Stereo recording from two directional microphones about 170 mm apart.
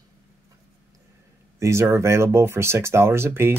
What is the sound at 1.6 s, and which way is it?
Speech, 15° right (ahead or behind).